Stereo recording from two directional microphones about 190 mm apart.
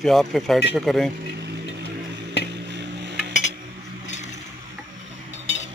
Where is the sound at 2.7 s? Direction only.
65° right (ahead or behind).